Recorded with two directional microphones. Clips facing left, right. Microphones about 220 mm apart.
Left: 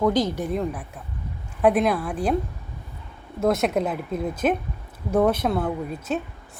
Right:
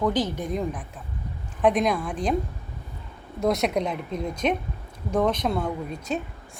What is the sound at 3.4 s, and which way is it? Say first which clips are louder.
A woman's voice: left 2 dB; centre (ahead or behind).